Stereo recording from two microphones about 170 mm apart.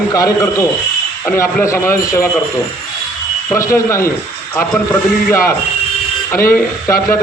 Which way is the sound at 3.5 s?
15° left (ahead or behind).